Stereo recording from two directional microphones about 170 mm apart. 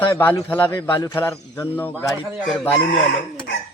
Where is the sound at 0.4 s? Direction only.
10° left (ahead or behind).